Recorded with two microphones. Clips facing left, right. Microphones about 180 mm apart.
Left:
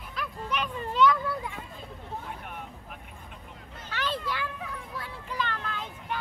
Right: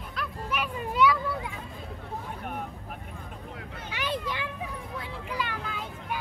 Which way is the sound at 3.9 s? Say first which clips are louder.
Even; 15° right (ahead or behind).